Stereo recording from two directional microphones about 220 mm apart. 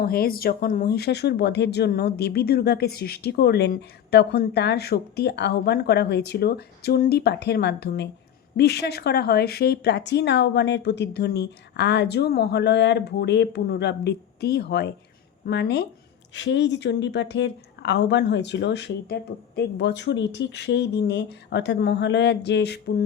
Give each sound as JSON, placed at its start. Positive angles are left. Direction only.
{"t": 0.0, "sound": "speech", "side_deg": 45}